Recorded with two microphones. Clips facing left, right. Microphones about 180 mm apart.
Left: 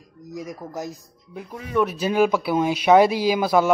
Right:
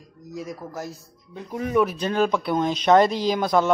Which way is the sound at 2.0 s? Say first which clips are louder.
Left 3 dB; 10° left (ahead or behind).